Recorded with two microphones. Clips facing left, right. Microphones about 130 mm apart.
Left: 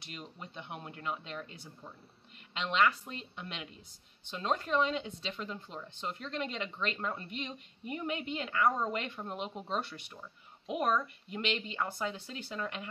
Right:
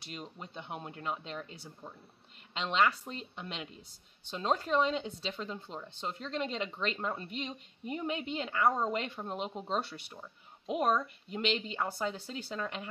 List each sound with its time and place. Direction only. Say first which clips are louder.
0.0 s speech: right 2 dB; 35° right (ahead or behind)